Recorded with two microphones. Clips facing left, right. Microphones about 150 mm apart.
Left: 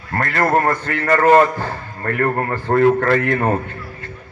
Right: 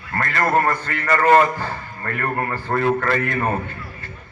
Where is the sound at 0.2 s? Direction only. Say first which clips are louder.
Left 2 dB; 45° left (ahead or behind).